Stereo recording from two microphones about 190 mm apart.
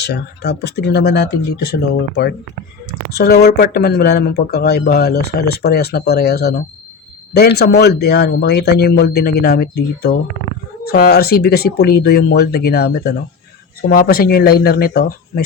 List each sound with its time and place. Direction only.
0.0 s speech: 60° left (ahead or behind)